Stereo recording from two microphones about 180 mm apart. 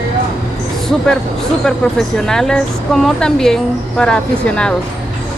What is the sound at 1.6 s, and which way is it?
A woman's voice, 5° left (ahead or behind).